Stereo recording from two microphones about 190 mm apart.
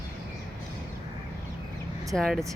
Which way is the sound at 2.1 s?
Centre (ahead or behind).